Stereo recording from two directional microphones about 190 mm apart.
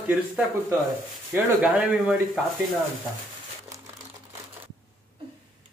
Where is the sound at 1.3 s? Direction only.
5° right (ahead or behind).